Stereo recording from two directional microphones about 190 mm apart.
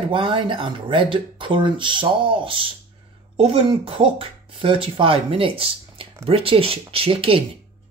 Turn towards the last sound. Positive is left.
turn(degrees=-30)  # may be behind; listen again after turning